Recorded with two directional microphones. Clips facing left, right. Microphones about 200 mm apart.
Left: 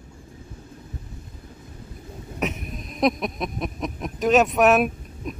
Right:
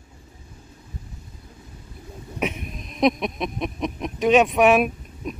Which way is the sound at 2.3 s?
Centre (ahead or behind).